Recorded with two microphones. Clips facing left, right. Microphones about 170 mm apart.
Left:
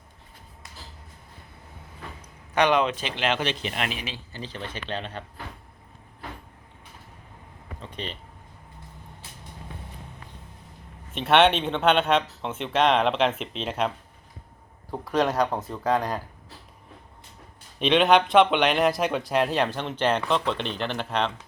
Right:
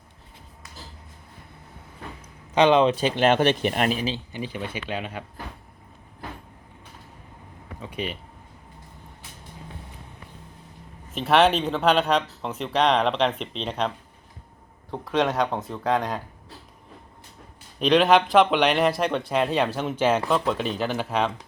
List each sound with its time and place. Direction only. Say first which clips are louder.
2.6 s speech: right 4 dB; 25° right (ahead or behind)
3.2 s speech: right 6 dB; 50° right (ahead or behind)
4.3 s speech: right 4 dB; 15° right (ahead or behind)
7.8 s speech: right 5 dB; 10° right (ahead or behind)
11.1 s speech: even; centre (ahead or behind)
17.7 s speech: right 1 dB; centre (ahead or behind)